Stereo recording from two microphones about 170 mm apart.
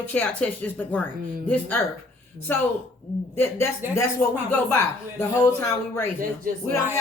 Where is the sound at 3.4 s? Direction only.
15° left (ahead or behind).